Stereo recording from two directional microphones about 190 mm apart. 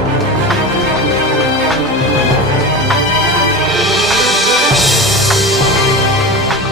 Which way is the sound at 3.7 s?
Centre (ahead or behind).